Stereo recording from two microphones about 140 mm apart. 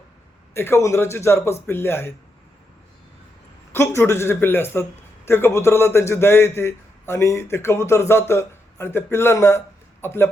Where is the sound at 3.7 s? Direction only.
20° left (ahead or behind).